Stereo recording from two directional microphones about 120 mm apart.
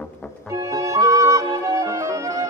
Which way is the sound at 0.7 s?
25° right (ahead or behind).